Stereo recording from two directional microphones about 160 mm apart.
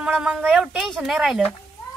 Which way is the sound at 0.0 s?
5° right (ahead or behind).